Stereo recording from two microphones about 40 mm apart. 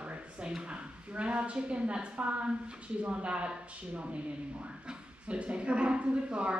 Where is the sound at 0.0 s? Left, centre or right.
Right.